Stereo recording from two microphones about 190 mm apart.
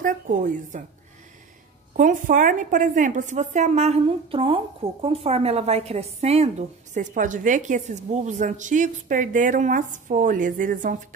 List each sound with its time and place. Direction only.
0.0 s a woman's voice: 45° right (ahead or behind)
2.0 s a woman's voice: 45° right (ahead or behind)